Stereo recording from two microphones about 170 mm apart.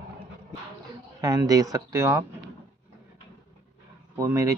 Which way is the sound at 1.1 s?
20° right (ahead or behind).